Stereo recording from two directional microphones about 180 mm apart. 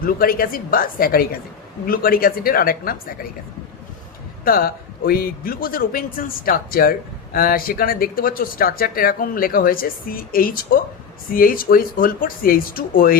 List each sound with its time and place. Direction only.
0.0 s speech: 55° left (ahead or behind)
4.4 s speech: 55° left (ahead or behind)